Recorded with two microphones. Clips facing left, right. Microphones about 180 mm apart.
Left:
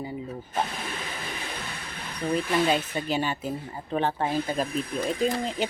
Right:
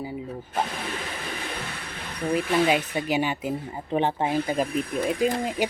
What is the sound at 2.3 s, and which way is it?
Speech, 10° right (ahead or behind).